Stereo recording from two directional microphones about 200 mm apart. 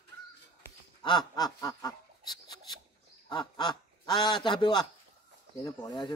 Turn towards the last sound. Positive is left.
turn(degrees=20)  # may be behind; listen again after turning